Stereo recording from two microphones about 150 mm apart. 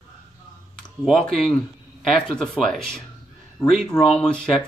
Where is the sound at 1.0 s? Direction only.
Centre (ahead or behind).